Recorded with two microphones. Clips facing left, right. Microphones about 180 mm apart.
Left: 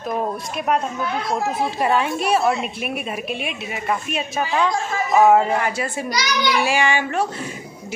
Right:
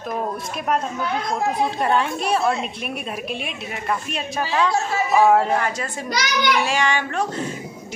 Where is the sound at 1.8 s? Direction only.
5° left (ahead or behind).